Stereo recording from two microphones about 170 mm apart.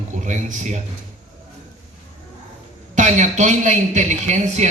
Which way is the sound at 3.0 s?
45° right (ahead or behind).